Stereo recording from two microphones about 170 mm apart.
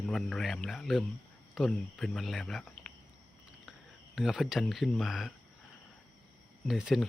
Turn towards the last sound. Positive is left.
turn(degrees=-5)  # may be behind; listen again after turning